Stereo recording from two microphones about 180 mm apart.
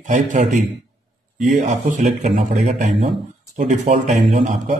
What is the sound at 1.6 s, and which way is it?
A man's voice, 45° right (ahead or behind).